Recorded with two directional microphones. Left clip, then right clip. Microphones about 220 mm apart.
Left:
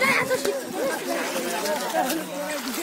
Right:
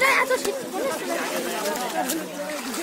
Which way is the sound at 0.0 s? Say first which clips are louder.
Right 2 dB; 20° right (ahead or behind).